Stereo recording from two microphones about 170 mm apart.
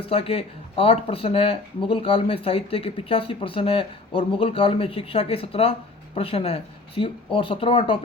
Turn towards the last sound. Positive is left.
turn(degrees=30)  # may be behind; listen again after turning